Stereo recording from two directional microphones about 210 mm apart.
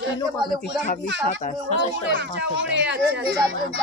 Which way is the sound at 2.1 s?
60° right (ahead or behind).